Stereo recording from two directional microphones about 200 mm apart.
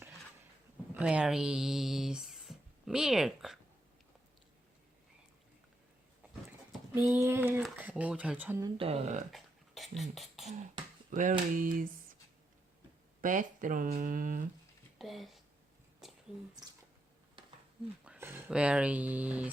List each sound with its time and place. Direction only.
0.9 s speech: 5° right (ahead or behind)
7.1 s speech: 10° right (ahead or behind)
8.8 s speech: 30° right (ahead or behind)
9.3 s beatboxing: centre (ahead or behind)
11.1 s a sound: 40° right (ahead or behind)
13.2 s speech: 40° right (ahead or behind)
14.9 s speech: centre (ahead or behind)
16.0 s a sound: centre (ahead or behind)
18.0 s speech: 10° right (ahead or behind)